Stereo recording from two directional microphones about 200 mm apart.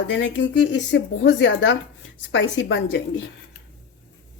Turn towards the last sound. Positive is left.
turn(degrees=65)  # may be behind; listen again after turning